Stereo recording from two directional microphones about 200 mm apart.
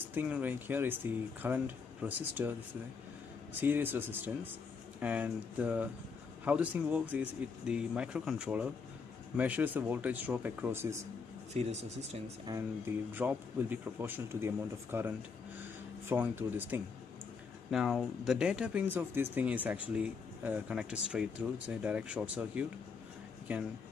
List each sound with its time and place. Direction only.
0.0 s speech: 10° right (ahead or behind)
3.5 s speech: 10° right (ahead or behind)
11.5 s speech: 35° right (ahead or behind)
12.4 s speech: 15° right (ahead or behind)